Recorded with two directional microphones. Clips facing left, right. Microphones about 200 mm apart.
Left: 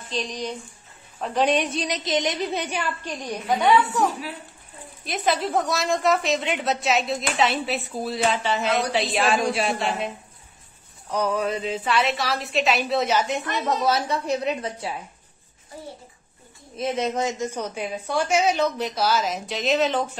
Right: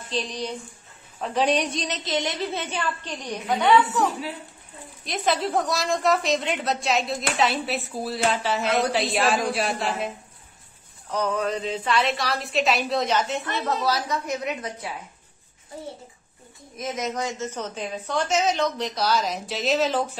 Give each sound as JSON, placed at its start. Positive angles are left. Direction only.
{"t": 1.2, "sound": "a woman's voice", "side_deg": 0}
{"t": 1.8, "sound": "a woman's voice", "side_deg": 15}
{"t": 5.0, "sound": "a woman's voice", "side_deg": 0}
{"t": 11.1, "sound": "a woman's voice", "side_deg": 10}
{"t": 16.7, "sound": "a woman's voice", "side_deg": 30}